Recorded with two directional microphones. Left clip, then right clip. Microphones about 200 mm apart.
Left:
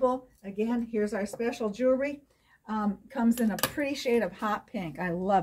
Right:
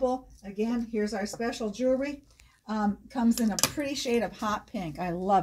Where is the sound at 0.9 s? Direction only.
15° left (ahead or behind).